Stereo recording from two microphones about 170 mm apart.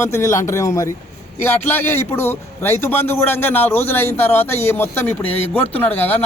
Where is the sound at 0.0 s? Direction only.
15° left (ahead or behind).